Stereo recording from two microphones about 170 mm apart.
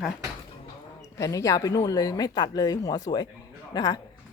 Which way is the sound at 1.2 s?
20° left (ahead or behind).